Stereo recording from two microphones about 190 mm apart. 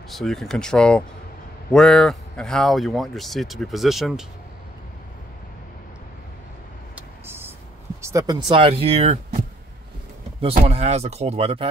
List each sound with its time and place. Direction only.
0.1 s speech: centre (ahead or behind)
7.0 s vehicle: 10° right (ahead or behind)
8.0 s speech: 15° right (ahead or behind); by 9.4 s 35° right (ahead or behind)
10.6 s speech: 35° right (ahead or behind)